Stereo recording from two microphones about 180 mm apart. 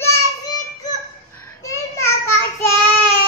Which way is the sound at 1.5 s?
15° left (ahead or behind).